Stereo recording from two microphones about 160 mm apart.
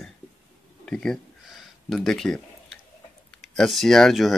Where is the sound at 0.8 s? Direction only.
5° left (ahead or behind).